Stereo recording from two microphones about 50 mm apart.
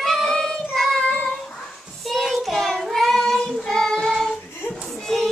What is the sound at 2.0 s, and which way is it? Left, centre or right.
Child singing, centre.